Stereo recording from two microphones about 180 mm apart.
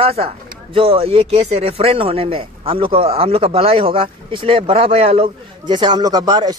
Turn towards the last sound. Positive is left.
turn(degrees=-20)  # may be behind; listen again after turning